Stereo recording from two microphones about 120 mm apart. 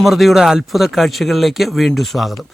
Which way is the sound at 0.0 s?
Centre (ahead or behind).